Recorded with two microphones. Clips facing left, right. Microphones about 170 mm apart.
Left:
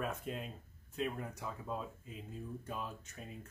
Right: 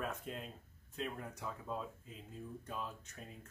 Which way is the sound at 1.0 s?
5° left (ahead or behind).